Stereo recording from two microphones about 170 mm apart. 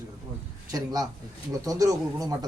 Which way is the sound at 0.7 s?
20° right (ahead or behind).